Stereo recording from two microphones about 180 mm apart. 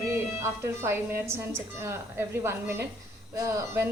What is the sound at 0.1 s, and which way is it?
A woman's voice, 15° right (ahead or behind).